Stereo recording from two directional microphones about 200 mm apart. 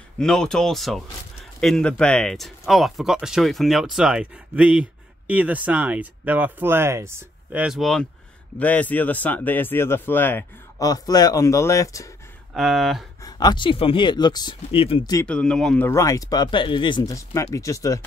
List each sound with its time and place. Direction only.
0.2 s speech: 5° left (ahead or behind)
12.5 s speech: centre (ahead or behind)
13.2 s speech: 20° left (ahead or behind)
15.1 s speech: 5° left (ahead or behind)
15.9 s speech: 15° left (ahead or behind)